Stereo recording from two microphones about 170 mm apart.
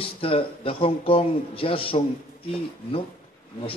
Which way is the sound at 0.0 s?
35° left (ahead or behind).